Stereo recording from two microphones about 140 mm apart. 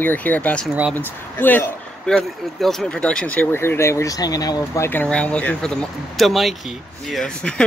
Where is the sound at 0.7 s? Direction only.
5° right (ahead or behind).